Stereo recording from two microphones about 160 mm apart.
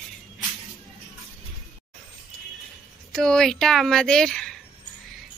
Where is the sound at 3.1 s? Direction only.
5° left (ahead or behind).